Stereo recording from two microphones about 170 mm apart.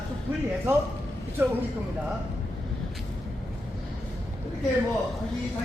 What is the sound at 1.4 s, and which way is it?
Speech, 15° right (ahead or behind).